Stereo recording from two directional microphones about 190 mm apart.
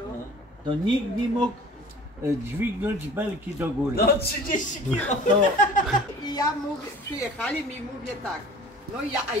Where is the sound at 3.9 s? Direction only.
55° left (ahead or behind).